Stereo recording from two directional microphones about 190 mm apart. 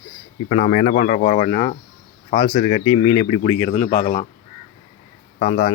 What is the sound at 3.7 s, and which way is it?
Speech, 40° left (ahead or behind).